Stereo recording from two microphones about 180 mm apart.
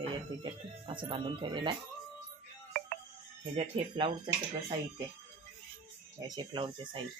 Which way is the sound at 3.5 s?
30° right (ahead or behind).